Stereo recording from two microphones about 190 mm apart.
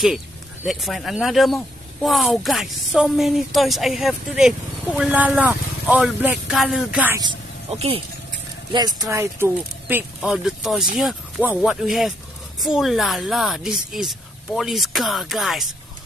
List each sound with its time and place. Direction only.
0.7 s a woman's voice: centre (ahead or behind)
7.7 s speech: 30° right (ahead or behind)
8.7 s a woman's voice: 20° right (ahead or behind); by 15.7 s centre (ahead or behind)